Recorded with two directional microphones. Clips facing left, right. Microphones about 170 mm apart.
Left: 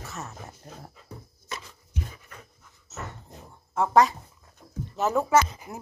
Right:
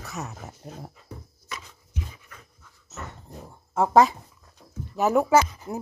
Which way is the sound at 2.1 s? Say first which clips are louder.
Left 1 dB; 50° left (ahead or behind).